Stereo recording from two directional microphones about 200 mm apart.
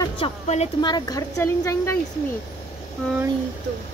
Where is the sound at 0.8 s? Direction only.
20° left (ahead or behind).